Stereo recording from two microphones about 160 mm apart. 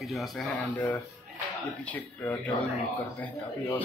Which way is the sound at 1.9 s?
10° left (ahead or behind).